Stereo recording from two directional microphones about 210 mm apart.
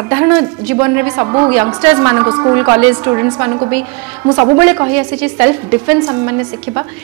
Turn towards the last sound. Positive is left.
turn(degrees=-20)  # may be behind; listen again after turning